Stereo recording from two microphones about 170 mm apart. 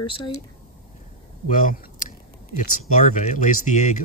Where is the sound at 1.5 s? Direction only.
50° left (ahead or behind).